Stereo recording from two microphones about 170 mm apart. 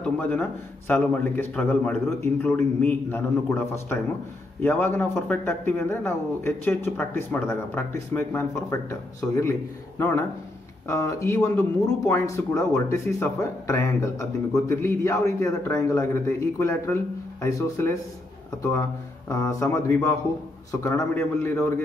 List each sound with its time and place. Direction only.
0.0 s speech: 10° left (ahead or behind)